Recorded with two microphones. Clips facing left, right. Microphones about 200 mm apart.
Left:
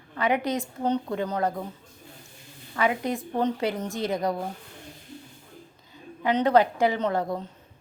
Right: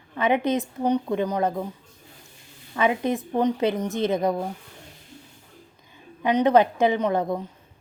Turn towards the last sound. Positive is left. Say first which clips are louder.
# right 3 dB
turn(degrees=-20)  # may be behind; listen again after turning